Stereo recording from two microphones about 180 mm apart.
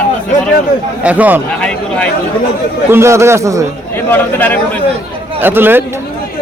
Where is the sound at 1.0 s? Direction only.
10° right (ahead or behind).